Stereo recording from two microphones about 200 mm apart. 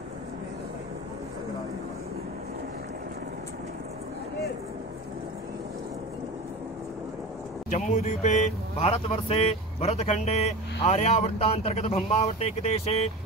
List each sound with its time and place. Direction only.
7.7 s speech: 40° left (ahead or behind)